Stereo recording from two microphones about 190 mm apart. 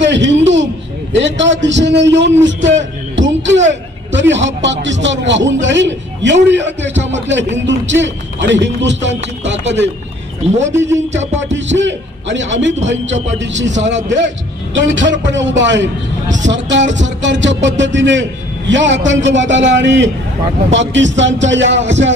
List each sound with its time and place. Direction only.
0.0 s a sound: 70° right (ahead or behind)
1.1 s a man's voice: 75° right (ahead or behind)
10.7 s speech: 15° right (ahead or behind)
11.5 s a man's voice: 75° right (ahead or behind)